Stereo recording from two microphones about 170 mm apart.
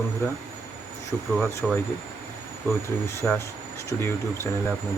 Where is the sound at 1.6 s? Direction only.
Centre (ahead or behind).